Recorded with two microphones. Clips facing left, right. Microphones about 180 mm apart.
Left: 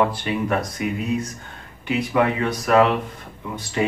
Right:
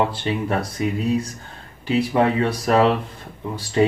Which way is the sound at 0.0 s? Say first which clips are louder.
Left 1 dB; 30° right (ahead or behind).